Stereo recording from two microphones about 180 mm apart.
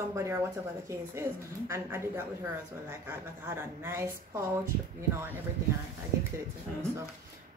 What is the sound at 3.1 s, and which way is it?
A woman's voice, 15° right (ahead or behind).